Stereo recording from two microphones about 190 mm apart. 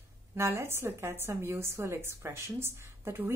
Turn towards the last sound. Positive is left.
turn(degrees=-10)  # may be behind; listen again after turning